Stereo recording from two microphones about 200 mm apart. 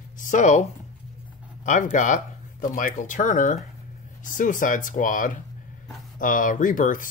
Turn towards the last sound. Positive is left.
turn(degrees=40)  # may be behind; listen again after turning